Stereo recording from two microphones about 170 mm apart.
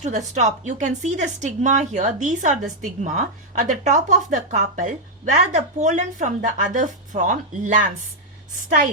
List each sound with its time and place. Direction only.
0.0 s a woman's voice: 45° right (ahead or behind)